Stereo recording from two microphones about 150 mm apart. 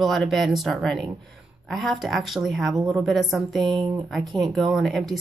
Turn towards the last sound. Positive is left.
turn(degrees=0)  # may be behind; listen again after turning